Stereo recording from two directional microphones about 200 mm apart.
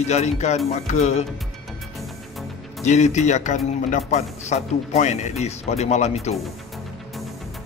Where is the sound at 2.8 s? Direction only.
35° left (ahead or behind).